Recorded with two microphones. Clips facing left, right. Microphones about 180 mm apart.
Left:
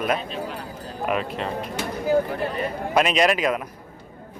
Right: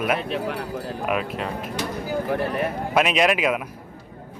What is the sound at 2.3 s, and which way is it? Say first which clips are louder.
Speech: right 3 dB; 60° right (ahead or behind).